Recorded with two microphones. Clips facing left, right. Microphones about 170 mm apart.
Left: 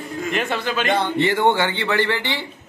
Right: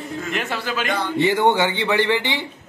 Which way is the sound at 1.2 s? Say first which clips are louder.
Right 3 dB; 15° right (ahead or behind).